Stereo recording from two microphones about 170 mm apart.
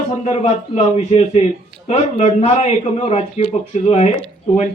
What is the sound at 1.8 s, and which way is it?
Speech, 40° left (ahead or behind).